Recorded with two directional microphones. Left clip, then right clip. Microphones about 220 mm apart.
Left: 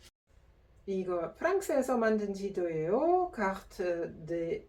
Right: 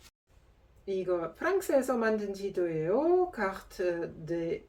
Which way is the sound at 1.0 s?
15° right (ahead or behind).